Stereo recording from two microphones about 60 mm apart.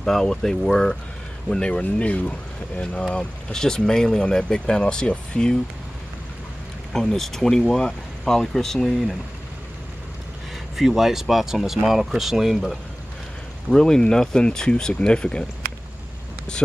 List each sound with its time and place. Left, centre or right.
0.0 s speech: centre
6.9 s speech: centre
10.8 s speech: centre
13.7 s speech: centre
16.5 s speech: centre